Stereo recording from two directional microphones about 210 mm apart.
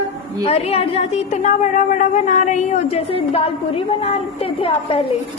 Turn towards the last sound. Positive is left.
turn(degrees=25)  # may be behind; listen again after turning